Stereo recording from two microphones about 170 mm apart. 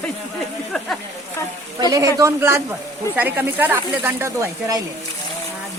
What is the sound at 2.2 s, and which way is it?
Speech, 15° right (ahead or behind).